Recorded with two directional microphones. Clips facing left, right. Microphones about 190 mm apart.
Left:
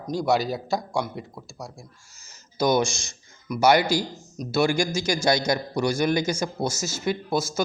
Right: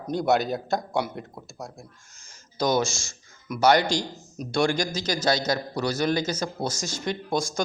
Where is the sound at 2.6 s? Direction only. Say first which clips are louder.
Left 2 dB; 10° left (ahead or behind).